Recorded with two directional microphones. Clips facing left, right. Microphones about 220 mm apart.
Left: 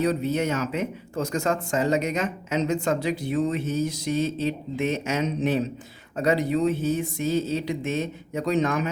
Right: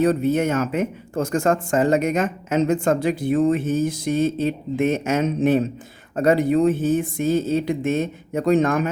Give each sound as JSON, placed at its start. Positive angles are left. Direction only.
{"t": 0.0, "sound": "speech", "side_deg": -50}